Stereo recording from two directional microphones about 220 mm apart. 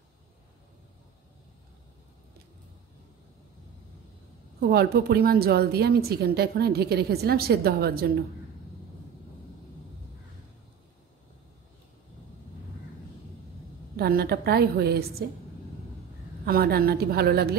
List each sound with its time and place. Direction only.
4.6 s a woman's voice: 45° right (ahead or behind)
13.9 s a woman's voice: 45° right (ahead or behind)
16.4 s a woman's voice: 45° right (ahead or behind)